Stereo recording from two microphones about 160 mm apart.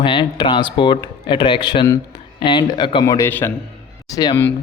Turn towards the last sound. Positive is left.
turn(degrees=25)  # may be behind; listen again after turning